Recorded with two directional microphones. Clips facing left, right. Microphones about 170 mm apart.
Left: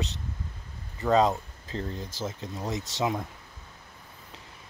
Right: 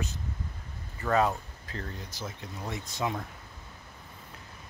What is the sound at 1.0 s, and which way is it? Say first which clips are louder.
Speech: left 4 dB; 20° left (ahead or behind).